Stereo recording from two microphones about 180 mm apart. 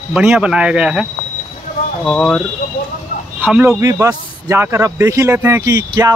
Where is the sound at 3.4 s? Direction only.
10° right (ahead or behind).